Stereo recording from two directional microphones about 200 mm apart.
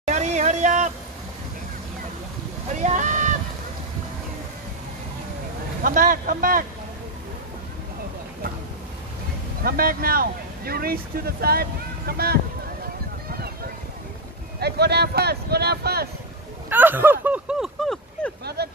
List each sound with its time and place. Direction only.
0.0 s a sound: 35° right (ahead or behind)
2.7 s a sound: 35° right (ahead or behind)
5.9 s speech: 45° right (ahead or behind)
9.6 s speech: 45° right (ahead or behind)
14.6 s speech: 55° right (ahead or behind)
16.6 s speech: 10° right (ahead or behind)
18.4 s speech: 55° right (ahead or behind)